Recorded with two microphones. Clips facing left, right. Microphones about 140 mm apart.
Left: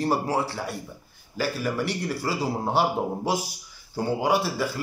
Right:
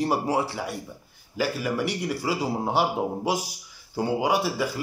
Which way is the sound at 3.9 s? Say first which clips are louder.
Even; 15° right (ahead or behind).